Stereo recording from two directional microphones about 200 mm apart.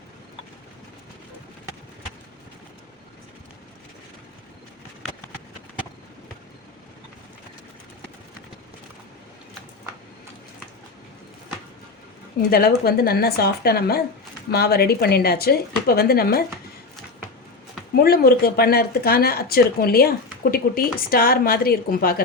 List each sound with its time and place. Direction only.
12.5 s speech: 50° left (ahead or behind)
18.0 s speech: 50° left (ahead or behind)